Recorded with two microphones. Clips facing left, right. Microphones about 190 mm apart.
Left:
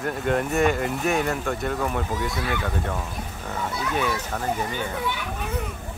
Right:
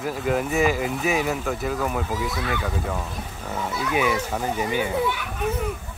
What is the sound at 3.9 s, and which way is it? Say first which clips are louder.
Speech: right 5 dB; 10° right (ahead or behind).